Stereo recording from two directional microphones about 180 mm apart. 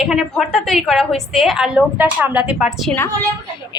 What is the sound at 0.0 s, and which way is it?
A woman's voice, centre (ahead or behind).